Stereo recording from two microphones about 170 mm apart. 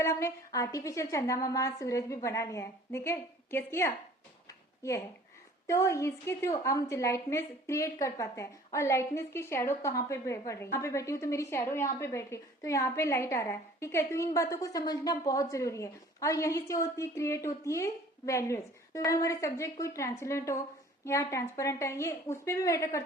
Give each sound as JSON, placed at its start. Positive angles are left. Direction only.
{"t": 0.0, "sound": "a woman's voice", "side_deg": 15}
{"t": 4.4, "sound": "a sound", "side_deg": 20}
{"t": 5.6, "sound": "a woman's voice", "side_deg": 20}